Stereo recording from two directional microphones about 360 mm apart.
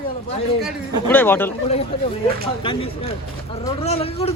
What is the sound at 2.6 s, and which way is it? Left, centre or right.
Speech, centre.